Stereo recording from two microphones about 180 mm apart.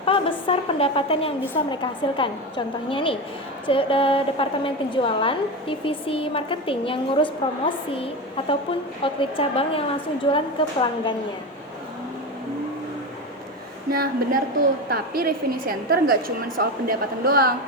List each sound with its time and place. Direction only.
0.0 s a woman's voice: 30° left (ahead or behind)
13.9 s a woman's voice: 55° right (ahead or behind)